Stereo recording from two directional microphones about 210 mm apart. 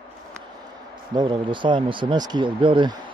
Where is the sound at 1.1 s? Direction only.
20° right (ahead or behind).